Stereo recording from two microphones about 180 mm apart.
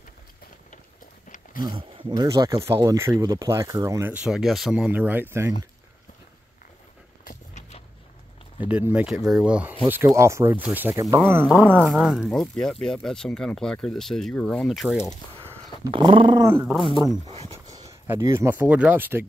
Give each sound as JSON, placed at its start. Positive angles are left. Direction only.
{"t": 1.6, "sound": "speech", "side_deg": -25}
{"t": 4.1, "sound": "speech", "side_deg": -5}
{"t": 7.2, "sound": "walk", "side_deg": 40}
{"t": 8.5, "sound": "speech", "side_deg": -10}
{"t": 15.8, "sound": "speech", "side_deg": -25}
{"t": 16.4, "sound": "speech", "side_deg": -15}